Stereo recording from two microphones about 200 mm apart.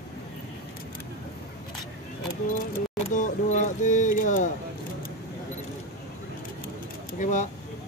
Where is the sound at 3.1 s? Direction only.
40° left (ahead or behind).